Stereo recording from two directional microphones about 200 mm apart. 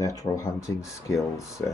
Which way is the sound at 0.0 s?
15° left (ahead or behind).